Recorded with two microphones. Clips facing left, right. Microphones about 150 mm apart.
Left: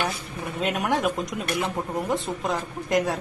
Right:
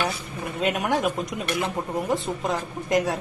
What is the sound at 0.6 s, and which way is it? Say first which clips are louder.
A woman's voice: right 1 dB; centre (ahead or behind).